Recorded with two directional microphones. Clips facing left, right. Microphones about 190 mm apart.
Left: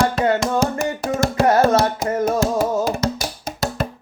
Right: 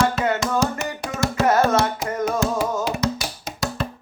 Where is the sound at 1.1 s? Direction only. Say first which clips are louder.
Left 2 dB; 30° left (ahead or behind).